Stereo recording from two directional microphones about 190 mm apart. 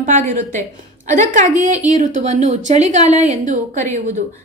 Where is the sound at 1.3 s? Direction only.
40° right (ahead or behind).